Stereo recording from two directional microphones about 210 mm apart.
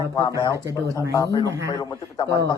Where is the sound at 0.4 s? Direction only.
15° left (ahead or behind).